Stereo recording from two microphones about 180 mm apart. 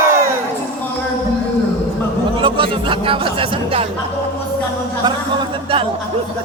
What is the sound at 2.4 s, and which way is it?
Music, 30° right (ahead or behind).